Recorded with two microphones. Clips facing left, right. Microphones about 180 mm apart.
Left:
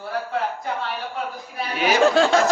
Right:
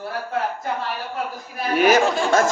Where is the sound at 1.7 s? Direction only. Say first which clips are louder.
Right 6 dB; 45° right (ahead or behind).